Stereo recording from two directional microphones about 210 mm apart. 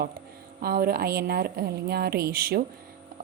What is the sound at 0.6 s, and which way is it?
A woman's voice, 45° right (ahead or behind).